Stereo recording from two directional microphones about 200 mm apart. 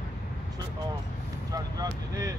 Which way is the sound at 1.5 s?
15° right (ahead or behind).